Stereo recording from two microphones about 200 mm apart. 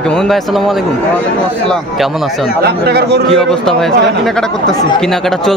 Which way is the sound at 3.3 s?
Centre (ahead or behind).